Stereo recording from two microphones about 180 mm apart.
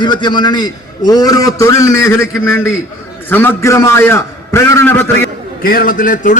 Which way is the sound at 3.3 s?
10° left (ahead or behind).